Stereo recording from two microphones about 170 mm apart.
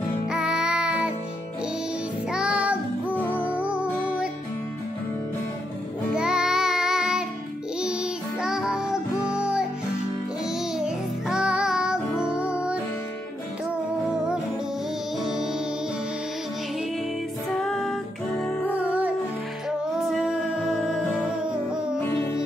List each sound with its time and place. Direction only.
0.3 s music: 5° right (ahead or behind)
2.3 s music: 5° right (ahead or behind)
3.2 s music: 10° left (ahead or behind)
3.4 s music: 10° right (ahead or behind)
6.1 s child singing: 5° right (ahead or behind)
7.8 s music: 5° right (ahead or behind)
10.8 s music: 5° right (ahead or behind)
14.1 s music: 5° right (ahead or behind)
17.5 s music: 5° left (ahead or behind)
18.8 s music: 10° right (ahead or behind)